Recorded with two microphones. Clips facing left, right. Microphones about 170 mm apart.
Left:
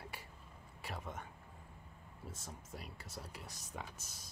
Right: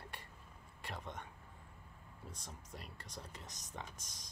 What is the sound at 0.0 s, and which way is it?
Whispering, 5° left (ahead or behind).